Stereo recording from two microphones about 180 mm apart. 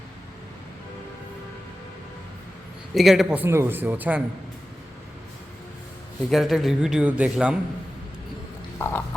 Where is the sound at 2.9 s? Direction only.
Centre (ahead or behind).